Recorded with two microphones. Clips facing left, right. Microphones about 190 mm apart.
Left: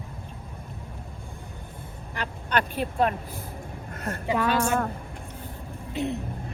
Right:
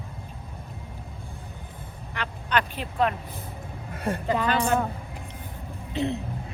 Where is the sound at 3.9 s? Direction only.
10° right (ahead or behind).